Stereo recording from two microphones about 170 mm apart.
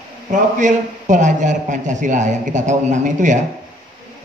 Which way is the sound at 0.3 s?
50° right (ahead or behind).